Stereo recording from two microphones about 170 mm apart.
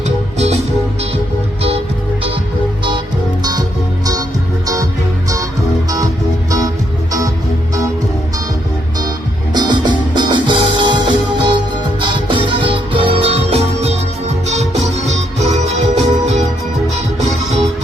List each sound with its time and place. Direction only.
0.3 s music: 40° right (ahead or behind)
4.6 s music: 20° right (ahead or behind)
9.0 s music: 25° right (ahead or behind); by 16.5 s 40° right (ahead or behind)